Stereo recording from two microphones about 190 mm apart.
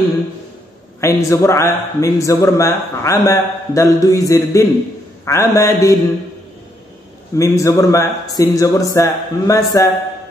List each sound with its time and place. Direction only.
1.0 s a man's voice: 15° left (ahead or behind)
7.3 s a man's voice: 15° left (ahead or behind)